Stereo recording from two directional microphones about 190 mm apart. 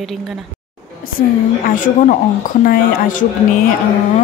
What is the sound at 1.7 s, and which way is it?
Speech, 45° left (ahead or behind).